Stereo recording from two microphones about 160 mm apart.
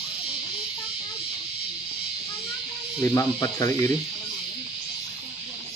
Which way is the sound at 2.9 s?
20° left (ahead or behind).